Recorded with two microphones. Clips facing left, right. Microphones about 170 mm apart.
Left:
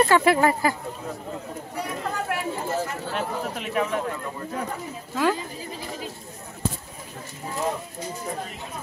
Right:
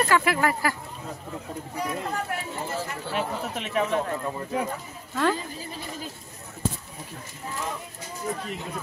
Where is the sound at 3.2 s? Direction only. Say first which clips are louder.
Right 1 dB; centre (ahead or behind).